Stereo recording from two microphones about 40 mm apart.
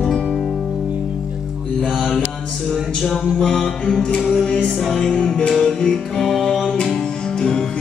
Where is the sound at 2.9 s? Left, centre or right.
Centre.